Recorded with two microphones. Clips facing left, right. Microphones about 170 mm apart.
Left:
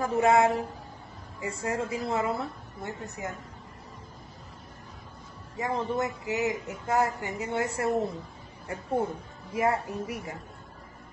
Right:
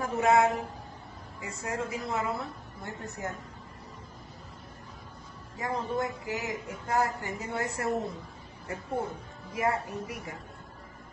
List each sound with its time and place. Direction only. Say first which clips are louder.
0.0 s a woman's voice: left 2 dB; 30° left (ahead or behind)
5.6 s a woman's voice: left 2 dB; 25° left (ahead or behind)
9.5 s a woman's voice: left 3 dB; 30° left (ahead or behind)